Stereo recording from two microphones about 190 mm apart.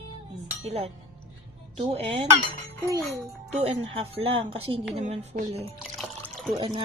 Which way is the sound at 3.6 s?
30° right (ahead or behind).